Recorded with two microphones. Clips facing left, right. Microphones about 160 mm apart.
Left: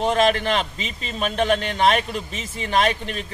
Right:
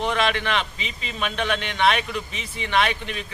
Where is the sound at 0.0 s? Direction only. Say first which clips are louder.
Left 4 dB; 40° left (ahead or behind).